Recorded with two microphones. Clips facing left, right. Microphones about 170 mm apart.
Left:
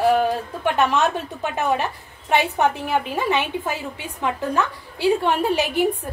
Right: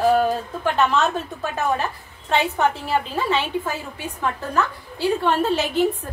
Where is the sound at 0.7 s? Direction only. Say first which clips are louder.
Even; 15° left (ahead or behind).